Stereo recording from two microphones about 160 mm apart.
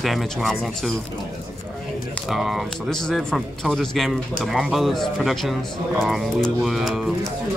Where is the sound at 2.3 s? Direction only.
Centre (ahead or behind).